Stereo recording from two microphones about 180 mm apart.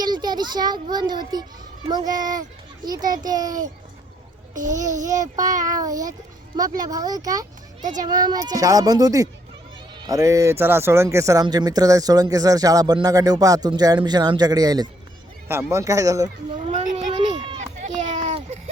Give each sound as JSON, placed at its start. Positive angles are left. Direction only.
{"t": 0.0, "sound": "a child's voice", "side_deg": -25}
{"t": 7.8, "sound": "a child's voice", "side_deg": -45}
{"t": 8.0, "sound": "speech", "side_deg": -20}
{"t": 16.5, "sound": "a sound", "side_deg": -35}